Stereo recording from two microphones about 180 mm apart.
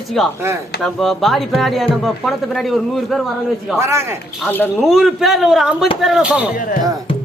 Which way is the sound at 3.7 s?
15° right (ahead or behind).